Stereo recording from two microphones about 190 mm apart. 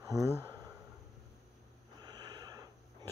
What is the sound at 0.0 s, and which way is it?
Speech, 15° right (ahead or behind).